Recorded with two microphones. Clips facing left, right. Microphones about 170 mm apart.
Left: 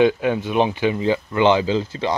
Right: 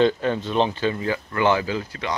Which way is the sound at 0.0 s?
10° left (ahead or behind).